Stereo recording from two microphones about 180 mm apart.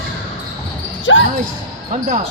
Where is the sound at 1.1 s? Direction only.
90° left.